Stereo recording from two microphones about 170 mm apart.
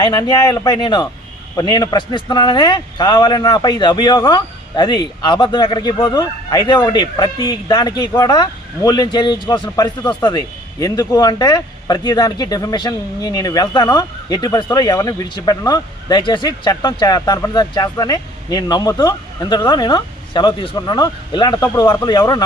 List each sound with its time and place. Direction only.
0.0 s a man's voice: 25° left (ahead or behind)